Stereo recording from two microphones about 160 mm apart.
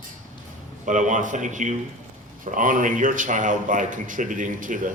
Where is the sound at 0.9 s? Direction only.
50° right (ahead or behind).